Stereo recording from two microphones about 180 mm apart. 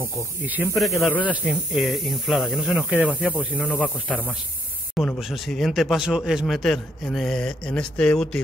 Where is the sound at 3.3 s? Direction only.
5° left (ahead or behind).